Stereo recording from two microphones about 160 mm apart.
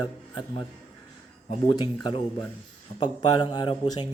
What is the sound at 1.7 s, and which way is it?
A man's voice, 30° left (ahead or behind).